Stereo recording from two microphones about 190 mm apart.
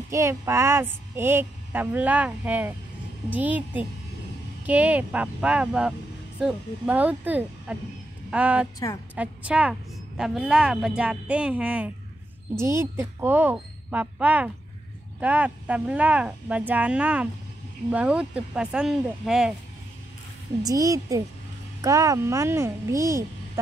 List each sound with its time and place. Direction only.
0.1 s speech: 15° right (ahead or behind)
8.7 s a woman's voice: 20° left (ahead or behind)
9.1 s a woman's voice: 5° right (ahead or behind)
20.6 s speech: 20° right (ahead or behind)